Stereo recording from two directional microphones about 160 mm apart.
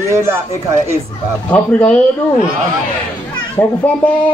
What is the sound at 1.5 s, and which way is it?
Speech, 10° left (ahead or behind).